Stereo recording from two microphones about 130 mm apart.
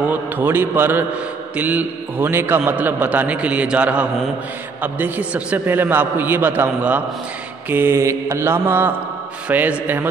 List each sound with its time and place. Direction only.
0.1 s a man's voice: 15° right (ahead or behind)
7.7 s mantra: 20° right (ahead or behind)
9.5 s a man's voice: 15° right (ahead or behind)